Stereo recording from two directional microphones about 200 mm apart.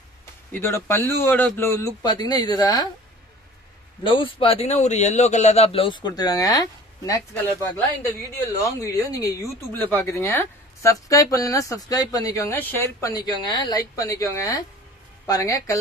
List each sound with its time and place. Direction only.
0.5 s a man's voice: 10° left (ahead or behind)
4.0 s a man's voice: 25° left (ahead or behind)